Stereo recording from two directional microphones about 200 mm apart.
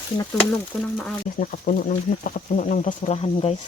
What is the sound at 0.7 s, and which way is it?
Speech, 10° left (ahead or behind).